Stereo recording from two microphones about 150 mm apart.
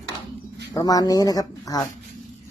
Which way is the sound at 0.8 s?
25° left (ahead or behind).